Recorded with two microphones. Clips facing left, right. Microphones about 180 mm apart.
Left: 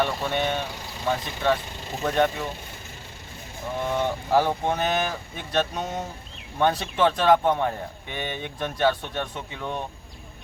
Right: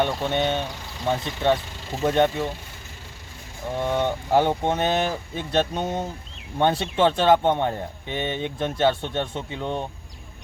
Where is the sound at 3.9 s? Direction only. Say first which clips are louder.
Right 1 dB; 25° right (ahead or behind).